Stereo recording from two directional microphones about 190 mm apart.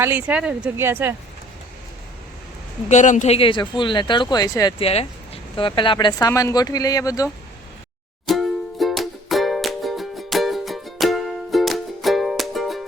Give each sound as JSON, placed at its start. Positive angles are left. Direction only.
{"t": 0.0, "sound": "speech", "side_deg": -10}
{"t": 2.9, "sound": "speech", "side_deg": 40}
{"t": 4.9, "sound": "speech", "side_deg": 30}
{"t": 8.3, "sound": "music", "side_deg": 0}